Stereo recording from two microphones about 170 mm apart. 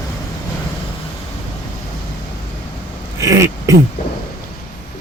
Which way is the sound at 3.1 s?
20° right (ahead or behind).